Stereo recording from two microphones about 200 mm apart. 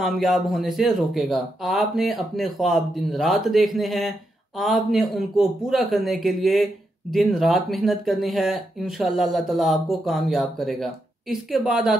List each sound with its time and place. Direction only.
0.0 s speech: centre (ahead or behind)